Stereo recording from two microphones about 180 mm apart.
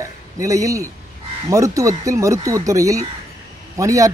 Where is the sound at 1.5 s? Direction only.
15° right (ahead or behind).